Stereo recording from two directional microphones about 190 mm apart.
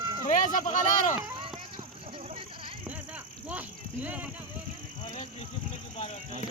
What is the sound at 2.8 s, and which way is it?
Vehicle, 5° right (ahead or behind).